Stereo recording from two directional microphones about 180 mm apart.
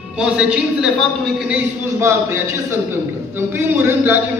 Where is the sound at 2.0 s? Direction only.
15° right (ahead or behind).